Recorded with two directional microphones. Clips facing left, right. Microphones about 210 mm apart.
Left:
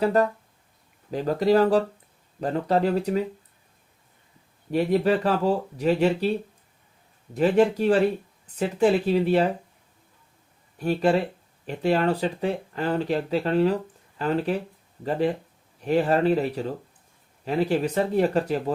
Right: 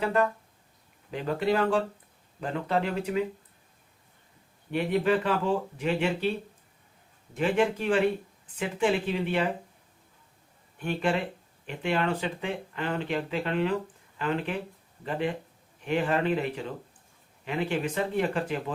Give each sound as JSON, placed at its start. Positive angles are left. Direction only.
{"t": 0.0, "sound": "speech", "side_deg": 40}
{"t": 4.7, "sound": "speech", "side_deg": 40}
{"t": 7.3, "sound": "speech", "side_deg": 40}
{"t": 10.8, "sound": "speech", "side_deg": 40}